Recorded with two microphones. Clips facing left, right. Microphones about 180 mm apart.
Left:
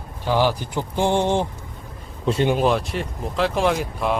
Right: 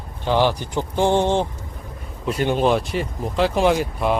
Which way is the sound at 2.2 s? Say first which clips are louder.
Left 2 dB; 30° left (ahead or behind).